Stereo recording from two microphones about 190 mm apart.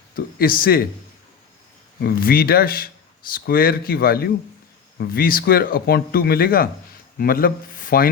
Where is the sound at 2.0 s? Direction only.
50° left (ahead or behind).